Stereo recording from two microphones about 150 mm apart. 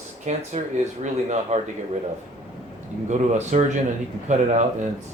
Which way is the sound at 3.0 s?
50° right (ahead or behind).